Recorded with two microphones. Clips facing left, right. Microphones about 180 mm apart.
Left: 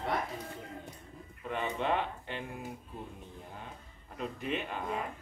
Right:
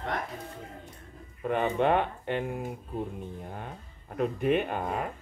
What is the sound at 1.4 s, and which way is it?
Speech, 55° right (ahead or behind).